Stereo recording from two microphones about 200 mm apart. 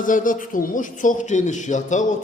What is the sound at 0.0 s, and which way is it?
A man's voice, 40° left (ahead or behind).